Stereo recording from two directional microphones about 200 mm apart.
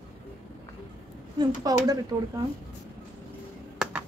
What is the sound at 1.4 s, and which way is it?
Speech, 20° right (ahead or behind).